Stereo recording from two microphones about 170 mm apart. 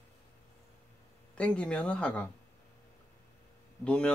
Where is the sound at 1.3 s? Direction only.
5° left (ahead or behind).